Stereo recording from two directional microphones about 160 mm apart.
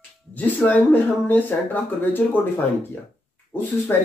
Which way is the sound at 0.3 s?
10° left (ahead or behind).